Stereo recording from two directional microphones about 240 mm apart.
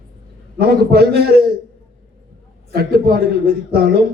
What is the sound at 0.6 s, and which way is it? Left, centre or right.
Speech, right.